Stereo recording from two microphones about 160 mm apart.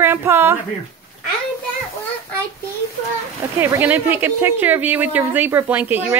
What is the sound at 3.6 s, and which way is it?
Speech, 10° right (ahead or behind).